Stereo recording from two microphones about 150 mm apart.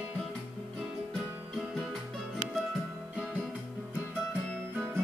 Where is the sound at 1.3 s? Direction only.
10° right (ahead or behind).